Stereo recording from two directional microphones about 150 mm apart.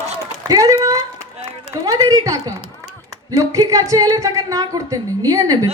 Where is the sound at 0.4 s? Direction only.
25° right (ahead or behind).